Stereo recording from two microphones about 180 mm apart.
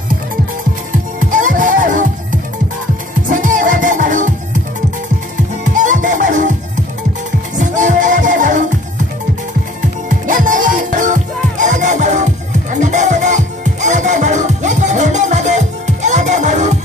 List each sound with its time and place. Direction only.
1.3 s music: 45° right (ahead or behind)
3.3 s music: 45° right (ahead or behind)
5.8 s music: 45° right (ahead or behind)
7.5 s music: 45° right (ahead or behind)
10.0 s music: 45° right (ahead or behind)